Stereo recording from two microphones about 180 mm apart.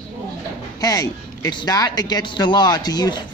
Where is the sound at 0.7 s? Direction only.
20° left (ahead or behind).